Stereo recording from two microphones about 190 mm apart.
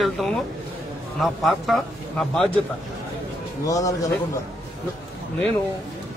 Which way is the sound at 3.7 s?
15° left (ahead or behind).